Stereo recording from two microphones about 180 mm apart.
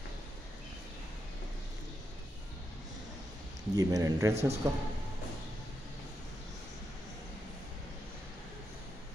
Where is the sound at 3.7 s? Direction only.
20° right (ahead or behind).